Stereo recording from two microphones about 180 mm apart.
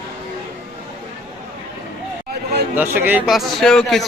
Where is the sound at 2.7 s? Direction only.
10° right (ahead or behind).